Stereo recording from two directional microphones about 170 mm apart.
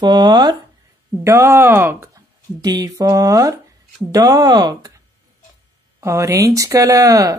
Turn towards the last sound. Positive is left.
turn(degrees=-20)  # may be behind; listen again after turning